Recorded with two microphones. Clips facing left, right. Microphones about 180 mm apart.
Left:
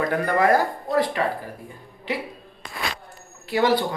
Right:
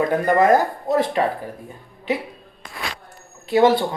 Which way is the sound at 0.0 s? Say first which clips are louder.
Right 4 dB; 20° right (ahead or behind).